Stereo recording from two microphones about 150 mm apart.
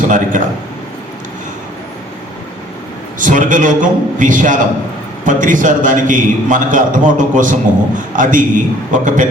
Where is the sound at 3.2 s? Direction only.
60° right (ahead or behind).